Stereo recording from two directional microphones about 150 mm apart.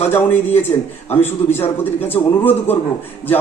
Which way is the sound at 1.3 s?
15° left (ahead or behind).